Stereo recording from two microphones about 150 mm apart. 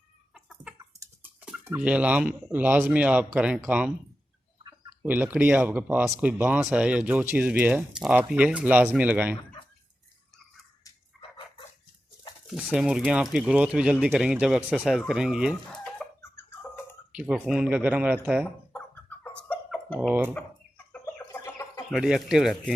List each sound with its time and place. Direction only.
1.2 s speech: 10° right (ahead or behind)
5.0 s speech: 10° right (ahead or behind)
11.2 s dog: 35° left (ahead or behind)
12.5 s speech: 5° right (ahead or behind)
16.0 s a sound: centre (ahead or behind)
17.1 s speech: 5° right (ahead or behind)
19.2 s a sound: 10° left (ahead or behind)
20.0 s speech: 10° right (ahead or behind)
20.9 s chicken: 15° left (ahead or behind)
21.9 s speech: 5° right (ahead or behind)